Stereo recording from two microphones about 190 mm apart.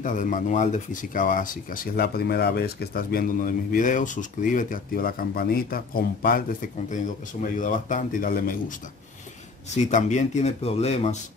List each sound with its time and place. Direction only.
0.0 s speech: 45° left (ahead or behind)
7.5 s speech: 40° left (ahead or behind)
9.8 s speech: 40° left (ahead or behind)